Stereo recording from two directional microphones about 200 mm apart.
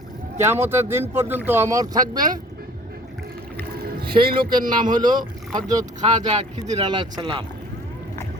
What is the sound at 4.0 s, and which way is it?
Music, 50° right (ahead or behind).